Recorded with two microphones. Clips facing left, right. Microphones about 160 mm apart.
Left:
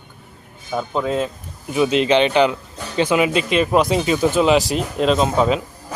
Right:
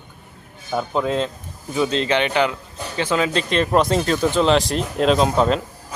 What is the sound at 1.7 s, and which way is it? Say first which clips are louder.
Speech: left 4 dB; 15° left (ahead or behind).